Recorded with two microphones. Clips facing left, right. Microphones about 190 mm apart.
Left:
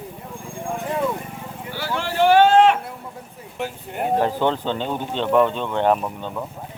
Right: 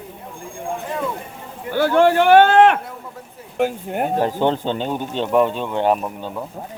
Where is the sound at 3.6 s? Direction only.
50° right (ahead or behind).